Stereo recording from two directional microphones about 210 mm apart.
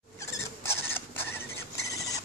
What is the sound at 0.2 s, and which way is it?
Rodents, 10° left (ahead or behind).